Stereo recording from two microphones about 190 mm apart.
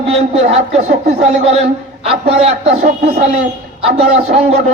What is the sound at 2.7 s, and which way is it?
Speech, 55° right (ahead or behind).